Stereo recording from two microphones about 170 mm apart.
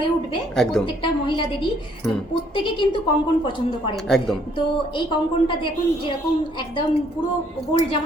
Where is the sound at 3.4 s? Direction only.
30° left (ahead or behind).